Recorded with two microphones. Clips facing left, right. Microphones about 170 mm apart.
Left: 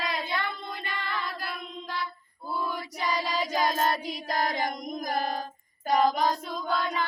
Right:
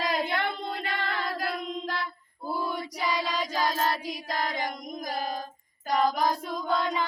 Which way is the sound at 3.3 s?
15° left (ahead or behind).